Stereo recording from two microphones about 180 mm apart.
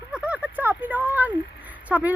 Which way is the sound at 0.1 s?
5° right (ahead or behind).